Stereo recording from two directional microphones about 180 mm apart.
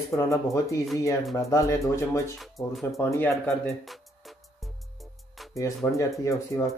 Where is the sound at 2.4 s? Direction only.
Centre (ahead or behind).